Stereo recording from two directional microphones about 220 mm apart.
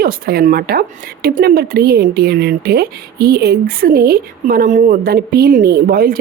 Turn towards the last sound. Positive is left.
turn(degrees=-40)  # may be behind; listen again after turning